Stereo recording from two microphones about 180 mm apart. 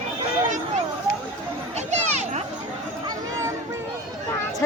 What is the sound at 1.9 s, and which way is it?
Children playing, 40° right (ahead or behind).